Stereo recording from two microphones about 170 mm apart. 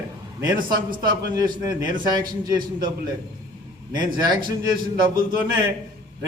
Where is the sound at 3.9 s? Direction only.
25° right (ahead or behind).